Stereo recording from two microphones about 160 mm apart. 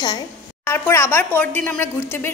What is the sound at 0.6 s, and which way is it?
A woman's voice, 15° left (ahead or behind).